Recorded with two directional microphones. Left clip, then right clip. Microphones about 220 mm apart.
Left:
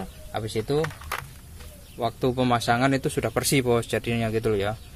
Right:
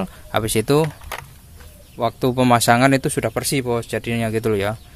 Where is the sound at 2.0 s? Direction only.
20° right (ahead or behind).